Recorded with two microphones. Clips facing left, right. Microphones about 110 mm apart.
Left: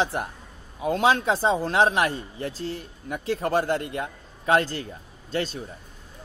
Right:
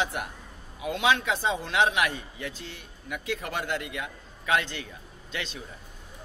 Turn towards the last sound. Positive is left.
turn(degrees=40)  # may be behind; listen again after turning